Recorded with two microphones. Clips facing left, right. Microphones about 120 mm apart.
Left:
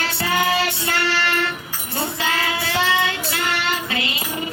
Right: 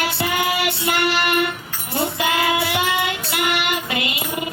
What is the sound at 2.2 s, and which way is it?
Child singing, 15° right (ahead or behind).